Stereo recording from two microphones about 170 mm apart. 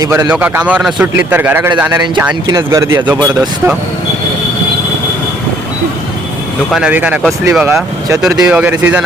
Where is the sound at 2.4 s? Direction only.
25° right (ahead or behind).